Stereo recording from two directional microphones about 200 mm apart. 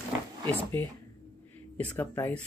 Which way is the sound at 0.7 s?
10° left (ahead or behind).